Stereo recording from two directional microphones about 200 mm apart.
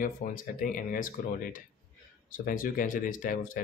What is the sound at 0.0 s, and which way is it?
Speech, 45° left (ahead or behind).